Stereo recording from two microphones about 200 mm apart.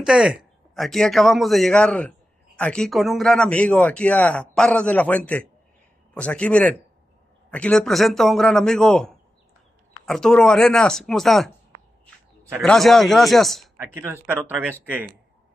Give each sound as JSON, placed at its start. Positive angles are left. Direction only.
{"t": 0.0, "sound": "a man's voice", "side_deg": -5}
{"t": 12.6, "sound": "a man's voice", "side_deg": 0}
{"t": 13.7, "sound": "speech", "side_deg": -10}